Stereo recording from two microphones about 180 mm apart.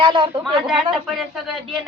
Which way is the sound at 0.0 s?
25° right (ahead or behind).